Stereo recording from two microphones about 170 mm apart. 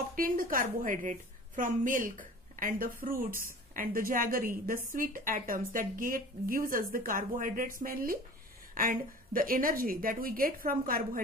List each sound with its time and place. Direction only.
0.1 s a woman's voice: 55° right (ahead or behind)